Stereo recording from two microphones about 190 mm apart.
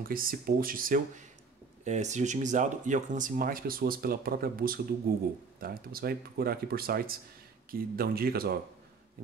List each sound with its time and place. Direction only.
0.0 s speech: 50° right (ahead or behind)